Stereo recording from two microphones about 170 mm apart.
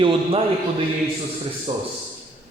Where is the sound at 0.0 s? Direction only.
35° right (ahead or behind).